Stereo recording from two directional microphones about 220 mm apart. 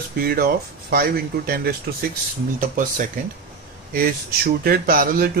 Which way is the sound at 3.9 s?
40° right (ahead or behind).